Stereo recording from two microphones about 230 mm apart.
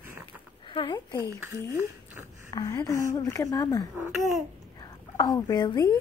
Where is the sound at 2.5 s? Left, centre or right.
Centre.